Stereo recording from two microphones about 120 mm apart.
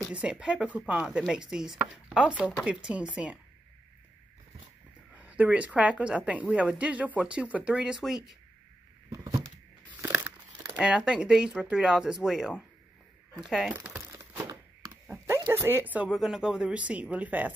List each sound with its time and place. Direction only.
0.0 s a woman's voice: 10° right (ahead or behind)
5.1 s a woman's voice: 10° right (ahead or behind)
9.1 s a sound: 30° right (ahead or behind)
10.0 s crumpling: 10° right (ahead or behind)
10.8 s a woman's voice: 10° right (ahead or behind)
13.7 s crumpling: 15° right (ahead or behind)
14.1 s a sound: 25° right (ahead or behind)
16.2 s a woman's voice: 5° right (ahead or behind)